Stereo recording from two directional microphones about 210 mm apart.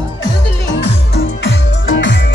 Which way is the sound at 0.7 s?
60° left (ahead or behind).